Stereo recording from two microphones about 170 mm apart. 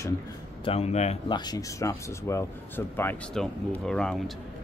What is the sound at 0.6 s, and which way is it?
Speech, 35° left (ahead or behind).